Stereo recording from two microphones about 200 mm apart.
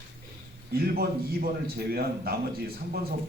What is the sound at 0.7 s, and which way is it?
A man's voice, 50° right (ahead or behind).